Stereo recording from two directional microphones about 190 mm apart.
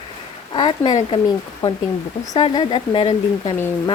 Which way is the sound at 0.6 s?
25° left (ahead or behind).